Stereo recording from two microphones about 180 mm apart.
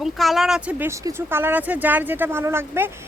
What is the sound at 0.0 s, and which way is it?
Speech, centre (ahead or behind).